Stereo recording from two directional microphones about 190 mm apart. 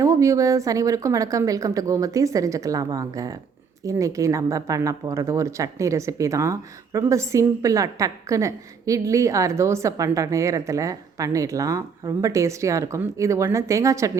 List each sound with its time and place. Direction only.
0.0 s speech: 15° right (ahead or behind)